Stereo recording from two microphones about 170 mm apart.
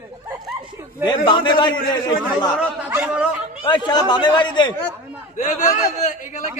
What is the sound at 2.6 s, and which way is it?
Speech, 5° right (ahead or behind).